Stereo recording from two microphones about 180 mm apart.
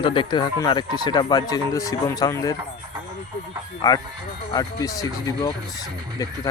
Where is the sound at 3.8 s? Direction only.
20° left (ahead or behind).